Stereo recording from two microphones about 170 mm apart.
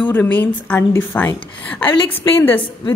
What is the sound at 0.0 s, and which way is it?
A woman's voice, 10° left (ahead or behind).